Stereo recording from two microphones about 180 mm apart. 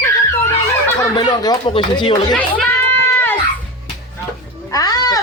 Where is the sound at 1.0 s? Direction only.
25° left (ahead or behind).